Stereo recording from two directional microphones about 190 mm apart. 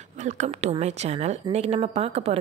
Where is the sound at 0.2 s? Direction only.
40° right (ahead or behind).